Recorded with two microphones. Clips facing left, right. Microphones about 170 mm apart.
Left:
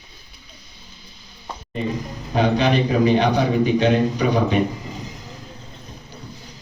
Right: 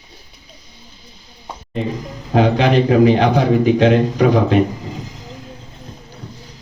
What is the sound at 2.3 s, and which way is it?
A man's voice, 90° right.